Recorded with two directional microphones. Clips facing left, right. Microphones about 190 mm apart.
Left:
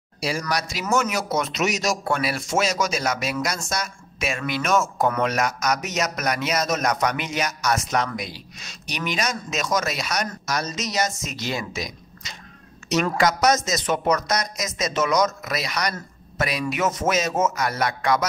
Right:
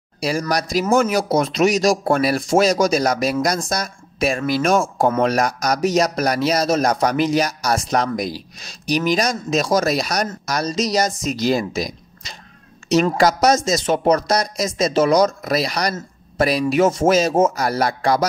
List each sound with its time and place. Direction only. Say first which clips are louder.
0.2 s speech: right 5 dB; 40° right (ahead or behind)